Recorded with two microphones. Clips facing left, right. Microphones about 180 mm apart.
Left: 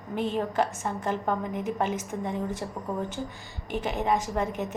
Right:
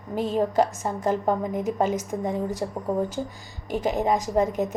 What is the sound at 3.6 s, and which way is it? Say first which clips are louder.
A woman's voice: right 4 dB; 40° right (ahead or behind).